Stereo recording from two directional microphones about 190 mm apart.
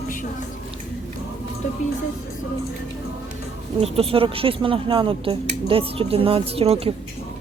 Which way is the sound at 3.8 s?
30° right (ahead or behind).